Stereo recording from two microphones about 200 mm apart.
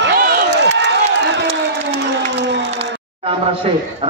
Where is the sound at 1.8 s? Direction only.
60° right (ahead or behind).